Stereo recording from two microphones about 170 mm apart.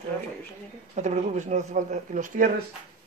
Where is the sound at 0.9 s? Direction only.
45° right (ahead or behind).